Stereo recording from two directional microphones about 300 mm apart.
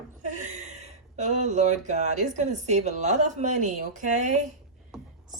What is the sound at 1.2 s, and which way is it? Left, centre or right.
A woman's voice, right.